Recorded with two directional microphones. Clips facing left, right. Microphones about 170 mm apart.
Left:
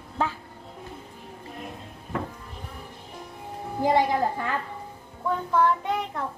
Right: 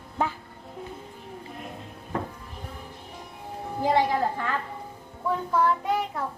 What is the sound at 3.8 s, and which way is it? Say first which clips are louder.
Speech: left 1 dB; 15° left (ahead or behind).